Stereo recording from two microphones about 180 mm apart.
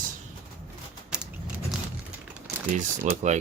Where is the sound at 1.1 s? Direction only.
5° right (ahead or behind).